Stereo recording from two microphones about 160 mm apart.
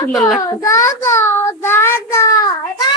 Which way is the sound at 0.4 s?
20° left (ahead or behind).